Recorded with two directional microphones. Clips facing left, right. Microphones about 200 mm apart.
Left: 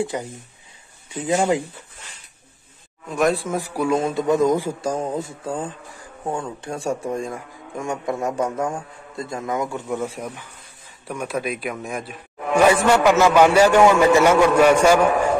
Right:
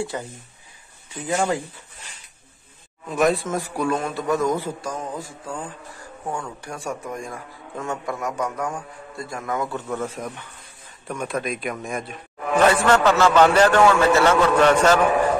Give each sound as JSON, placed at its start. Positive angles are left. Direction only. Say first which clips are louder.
{"t": 0.0, "sound": "a man's voice", "louder": "left 3 dB", "side_deg": 15}
{"t": 3.1, "sound": "speech", "louder": "even", "side_deg": 0}
{"t": 3.4, "sound": "a man's voice", "louder": "left 2 dB", "side_deg": 10}
{"t": 4.0, "sound": "speech", "louder": "left 4 dB", "side_deg": 20}
{"t": 4.8, "sound": "a man's voice", "louder": "left 6 dB", "side_deg": 30}